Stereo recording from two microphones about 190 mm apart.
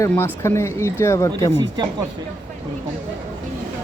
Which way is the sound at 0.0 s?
15° left (ahead or behind).